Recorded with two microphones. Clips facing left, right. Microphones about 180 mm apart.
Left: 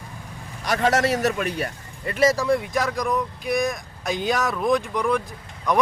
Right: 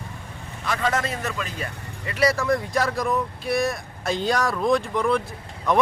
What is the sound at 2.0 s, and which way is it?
Speech, 45° left (ahead or behind).